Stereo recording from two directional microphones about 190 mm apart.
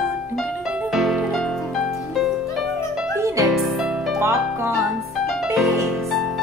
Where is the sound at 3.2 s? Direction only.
15° right (ahead or behind).